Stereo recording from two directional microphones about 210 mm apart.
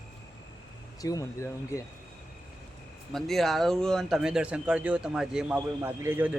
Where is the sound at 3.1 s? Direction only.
Centre (ahead or behind).